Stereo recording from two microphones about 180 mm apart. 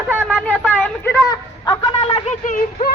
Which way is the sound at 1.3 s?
25° left (ahead or behind).